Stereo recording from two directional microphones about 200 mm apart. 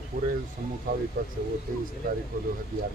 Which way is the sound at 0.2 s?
45° right (ahead or behind).